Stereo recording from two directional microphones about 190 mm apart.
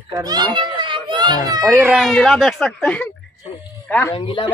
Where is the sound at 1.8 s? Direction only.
Centre (ahead or behind).